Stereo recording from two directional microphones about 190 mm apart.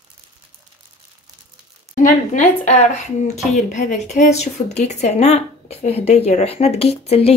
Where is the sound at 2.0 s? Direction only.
40° left (ahead or behind).